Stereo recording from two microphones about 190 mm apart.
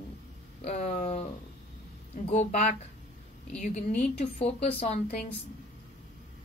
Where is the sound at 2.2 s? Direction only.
40° left (ahead or behind).